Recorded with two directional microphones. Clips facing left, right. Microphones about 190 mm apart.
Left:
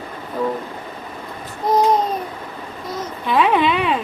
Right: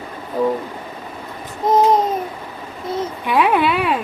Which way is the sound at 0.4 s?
15° right (ahead or behind).